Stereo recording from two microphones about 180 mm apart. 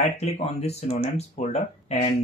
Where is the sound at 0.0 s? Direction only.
35° left (ahead or behind).